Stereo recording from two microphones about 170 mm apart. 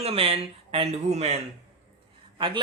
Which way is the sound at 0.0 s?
35° right (ahead or behind).